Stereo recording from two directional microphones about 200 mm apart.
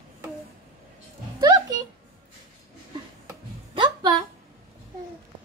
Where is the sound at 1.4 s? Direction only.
20° right (ahead or behind).